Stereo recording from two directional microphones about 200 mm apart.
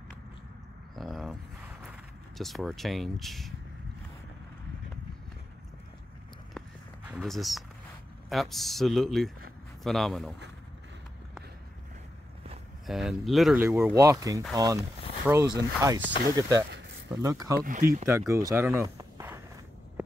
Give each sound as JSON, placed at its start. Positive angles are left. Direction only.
{"t": 0.9, "sound": "a sound", "side_deg": 0}
{"t": 1.9, "sound": "speech", "side_deg": 0}
{"t": 7.1, "sound": "a man's voice", "side_deg": 0}
{"t": 12.8, "sound": "a man's voice", "side_deg": 0}
{"t": 13.7, "sound": "speech", "side_deg": -15}
{"t": 17.6, "sound": "speech", "side_deg": -40}
{"t": 18.0, "sound": "speech", "side_deg": -15}